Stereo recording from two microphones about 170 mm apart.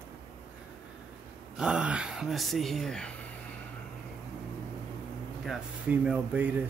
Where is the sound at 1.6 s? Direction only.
5° right (ahead or behind).